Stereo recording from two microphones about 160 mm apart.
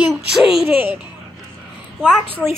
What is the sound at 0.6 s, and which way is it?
A woman's voice, 10° right (ahead or behind).